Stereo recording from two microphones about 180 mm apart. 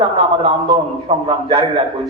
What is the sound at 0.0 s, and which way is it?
A man's voice, 30° right (ahead or behind).